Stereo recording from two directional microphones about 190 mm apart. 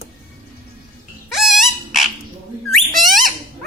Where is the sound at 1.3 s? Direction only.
Centre (ahead or behind).